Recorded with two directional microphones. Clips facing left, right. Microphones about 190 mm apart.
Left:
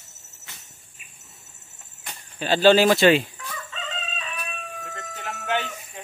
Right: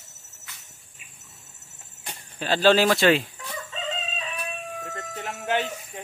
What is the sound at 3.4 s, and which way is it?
Crowing, 25° right (ahead or behind).